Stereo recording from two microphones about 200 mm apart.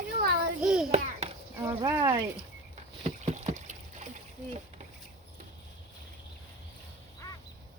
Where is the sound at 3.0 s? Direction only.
35° right (ahead or behind).